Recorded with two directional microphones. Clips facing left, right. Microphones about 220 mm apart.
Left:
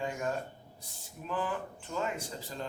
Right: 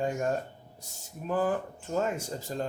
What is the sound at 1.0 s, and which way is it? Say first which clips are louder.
Speech: right 7 dB; 45° right (ahead or behind).